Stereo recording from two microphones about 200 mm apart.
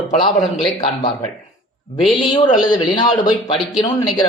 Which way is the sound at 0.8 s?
25° left (ahead or behind).